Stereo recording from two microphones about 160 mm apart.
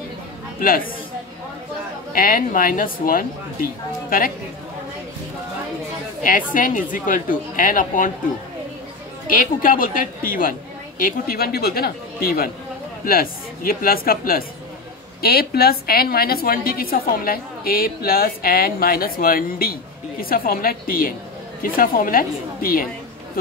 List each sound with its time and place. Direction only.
0.6 s a man's voice: 60° left (ahead or behind)
2.1 s a woman's voice: 60° left (ahead or behind)
6.2 s a woman's voice: 60° left (ahead or behind)
9.3 s a woman's voice: 60° left (ahead or behind)